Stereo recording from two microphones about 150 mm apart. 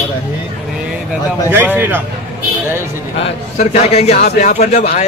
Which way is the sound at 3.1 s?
45° left (ahead or behind).